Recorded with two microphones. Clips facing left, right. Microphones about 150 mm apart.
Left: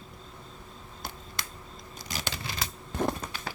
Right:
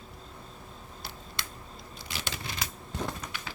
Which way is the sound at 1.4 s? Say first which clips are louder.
Left 1 dB; 45° left (ahead or behind).